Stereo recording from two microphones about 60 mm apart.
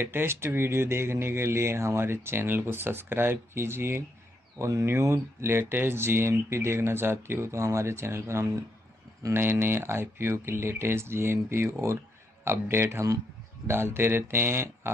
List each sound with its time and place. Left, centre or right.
0.0 s speech: right
4.6 s speech: right
9.3 s speech: right